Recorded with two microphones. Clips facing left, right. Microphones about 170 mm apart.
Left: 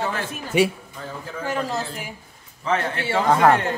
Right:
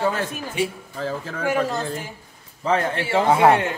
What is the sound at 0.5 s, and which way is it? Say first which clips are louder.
Speech: left 6 dB; 70° left (ahead or behind).